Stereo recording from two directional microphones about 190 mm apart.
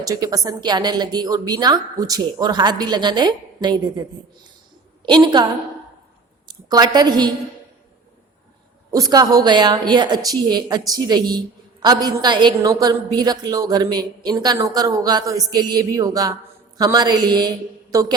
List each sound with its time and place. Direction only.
0.0 s a woman's voice: 20° right (ahead or behind)
5.0 s a woman's voice: 25° right (ahead or behind)
6.5 s a woman's voice: 20° right (ahead or behind)
8.9 s a woman's voice: 20° right (ahead or behind)